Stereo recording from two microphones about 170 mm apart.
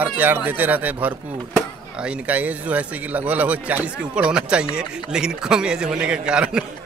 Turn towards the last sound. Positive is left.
turn(degrees=-5)  # may be behind; listen again after turning